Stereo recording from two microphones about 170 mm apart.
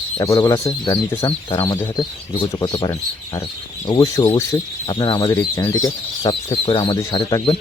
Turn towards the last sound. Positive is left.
turn(degrees=25)  # may be behind; listen again after turning